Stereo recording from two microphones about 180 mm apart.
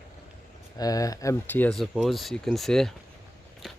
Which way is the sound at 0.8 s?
20° left (ahead or behind).